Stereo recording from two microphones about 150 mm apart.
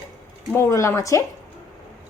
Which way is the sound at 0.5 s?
20° left (ahead or behind).